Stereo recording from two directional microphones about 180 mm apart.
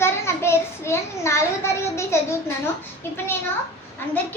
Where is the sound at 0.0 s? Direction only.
15° left (ahead or behind).